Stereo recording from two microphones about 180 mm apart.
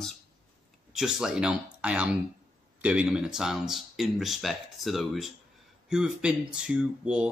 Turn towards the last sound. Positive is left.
turn(degrees=-5)  # may be behind; listen again after turning